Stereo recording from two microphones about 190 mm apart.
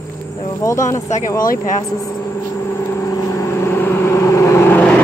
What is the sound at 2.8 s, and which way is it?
Vehicle, 15° left (ahead or behind).